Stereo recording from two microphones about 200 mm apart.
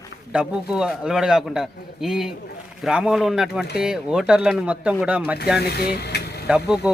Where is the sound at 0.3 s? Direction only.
5° right (ahead or behind).